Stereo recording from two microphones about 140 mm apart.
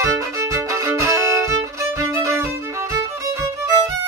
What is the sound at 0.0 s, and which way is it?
Violin, 20° right (ahead or behind).